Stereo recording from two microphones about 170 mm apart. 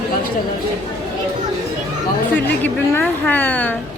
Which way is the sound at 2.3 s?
10° left (ahead or behind).